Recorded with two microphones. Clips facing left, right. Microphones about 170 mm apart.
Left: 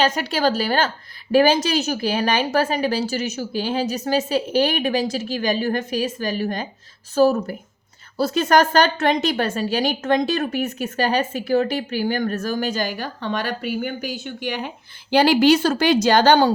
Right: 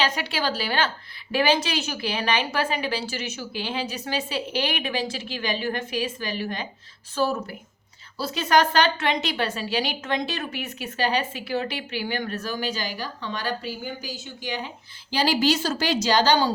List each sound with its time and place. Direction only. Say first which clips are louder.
0.0 s a woman's voice: left 6 dB; 45° left (ahead or behind)